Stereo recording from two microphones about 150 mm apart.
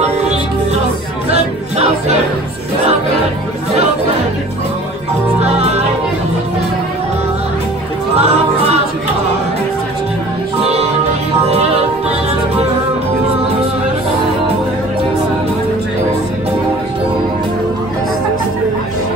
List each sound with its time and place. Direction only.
0.0 s music: 45° right (ahead or behind)
5.4 s music: 45° right (ahead or behind)
8.2 s music: 45° right (ahead or behind)
10.6 s music: 45° right (ahead or behind)